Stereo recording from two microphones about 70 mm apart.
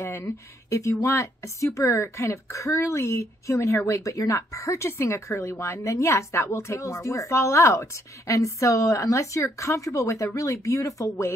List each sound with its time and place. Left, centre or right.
0.0 s speech: left